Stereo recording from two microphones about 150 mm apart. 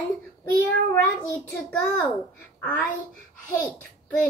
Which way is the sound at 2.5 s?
10° left (ahead or behind).